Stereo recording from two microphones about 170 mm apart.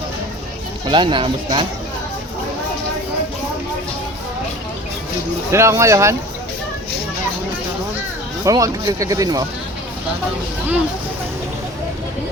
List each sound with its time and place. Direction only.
0.9 s speech: 30° right (ahead or behind)
5.5 s speech: 15° right (ahead or behind)
8.4 s speech: 20° right (ahead or behind)